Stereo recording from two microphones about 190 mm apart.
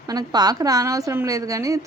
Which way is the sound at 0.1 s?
20° right (ahead or behind).